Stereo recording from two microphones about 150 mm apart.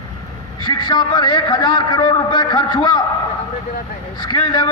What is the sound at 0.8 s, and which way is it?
A man's voice, 30° left (ahead or behind).